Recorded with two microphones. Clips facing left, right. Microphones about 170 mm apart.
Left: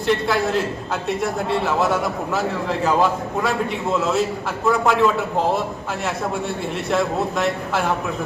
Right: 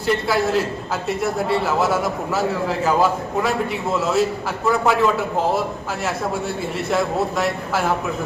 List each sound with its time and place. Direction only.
0.1 s a man's voice: centre (ahead or behind)
6.9 s a man's voice: centre (ahead or behind)